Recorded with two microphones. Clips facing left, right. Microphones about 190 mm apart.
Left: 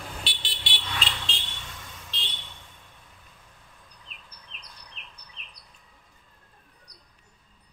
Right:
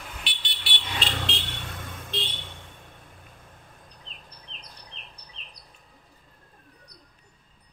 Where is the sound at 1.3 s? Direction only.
60° right (ahead or behind).